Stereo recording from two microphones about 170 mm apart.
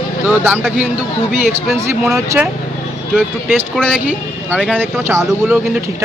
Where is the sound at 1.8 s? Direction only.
15° right (ahead or behind).